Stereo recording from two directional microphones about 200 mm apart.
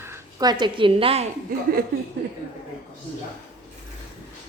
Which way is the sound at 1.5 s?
45° right (ahead or behind).